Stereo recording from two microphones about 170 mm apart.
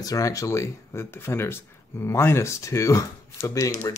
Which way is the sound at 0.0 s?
20° left (ahead or behind).